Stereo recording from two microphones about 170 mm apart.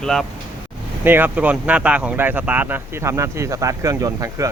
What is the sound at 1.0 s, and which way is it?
Speech, 10° right (ahead or behind).